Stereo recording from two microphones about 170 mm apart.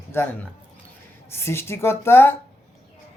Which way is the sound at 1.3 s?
15° left (ahead or behind).